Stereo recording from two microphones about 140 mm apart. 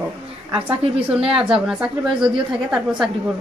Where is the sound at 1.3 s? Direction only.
40° right (ahead or behind).